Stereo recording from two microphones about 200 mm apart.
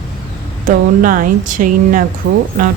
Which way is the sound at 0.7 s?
45° right (ahead or behind).